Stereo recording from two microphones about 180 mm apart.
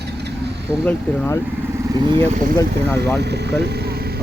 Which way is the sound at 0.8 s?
10° left (ahead or behind).